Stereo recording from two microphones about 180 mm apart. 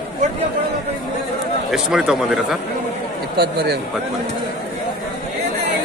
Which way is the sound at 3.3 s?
65° right (ahead or behind).